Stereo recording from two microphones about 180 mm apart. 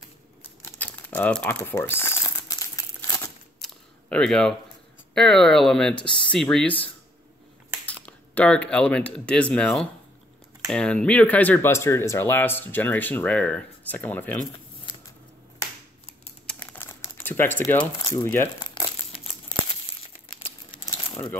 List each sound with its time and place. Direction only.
0.7 s crumpling: 10° left (ahead or behind)
3.6 s camera: 5° left (ahead or behind)
5.1 s speech: 5° left (ahead or behind)
16.4 s crumpling: 10° left (ahead or behind)
18.6 s crumpling: 25° left (ahead or behind)
20.4 s crumpling: 30° left (ahead or behind)